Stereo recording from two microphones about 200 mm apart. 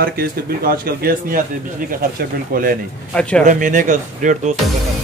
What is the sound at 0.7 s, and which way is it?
Speech, 45° right (ahead or behind).